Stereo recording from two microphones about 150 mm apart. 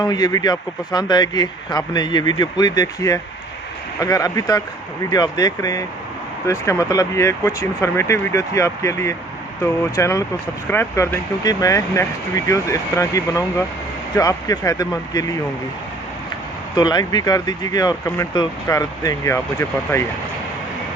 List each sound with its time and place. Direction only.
0.0 s speech: 25° left (ahead or behind)
16.7 s speech: 25° left (ahead or behind)